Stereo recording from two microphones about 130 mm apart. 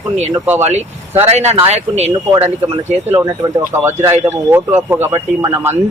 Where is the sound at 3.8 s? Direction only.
20° right (ahead or behind).